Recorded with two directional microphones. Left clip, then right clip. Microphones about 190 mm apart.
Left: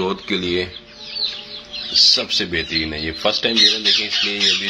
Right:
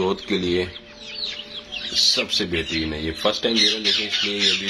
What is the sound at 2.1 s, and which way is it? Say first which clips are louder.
Speech: left 3 dB; 15° right (ahead or behind).